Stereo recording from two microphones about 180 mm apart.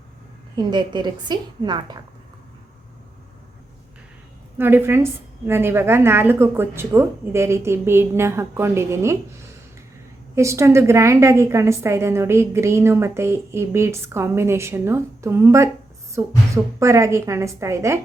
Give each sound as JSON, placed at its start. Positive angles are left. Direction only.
{"t": 0.5, "sound": "a woman's voice", "side_deg": -25}
{"t": 4.5, "sound": "a woman's voice", "side_deg": -10}
{"t": 10.3, "sound": "a woman's voice", "side_deg": -15}